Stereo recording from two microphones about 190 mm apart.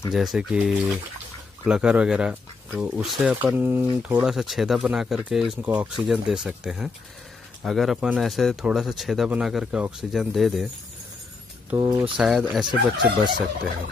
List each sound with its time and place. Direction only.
0.1 s speech: centre (ahead or behind)
11.7 s speech: 15° right (ahead or behind)
12.2 s speech: 5° right (ahead or behind)